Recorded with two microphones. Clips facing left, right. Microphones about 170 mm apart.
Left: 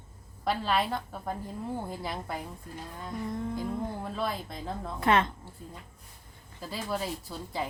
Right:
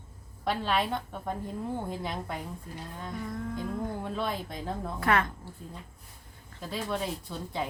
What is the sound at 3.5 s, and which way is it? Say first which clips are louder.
Speech: even; 5° left (ahead or behind).